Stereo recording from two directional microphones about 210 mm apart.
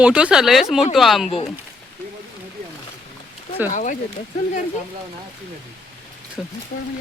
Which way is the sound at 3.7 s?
35° left (ahead or behind).